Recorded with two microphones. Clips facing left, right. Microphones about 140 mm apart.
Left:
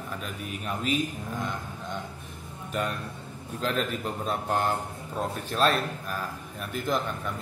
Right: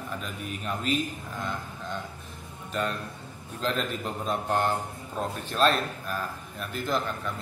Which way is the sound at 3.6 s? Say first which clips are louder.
Left 1 dB; 5° left (ahead or behind).